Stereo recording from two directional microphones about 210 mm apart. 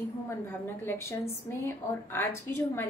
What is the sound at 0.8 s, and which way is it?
A woman's voice, 10° left (ahead or behind).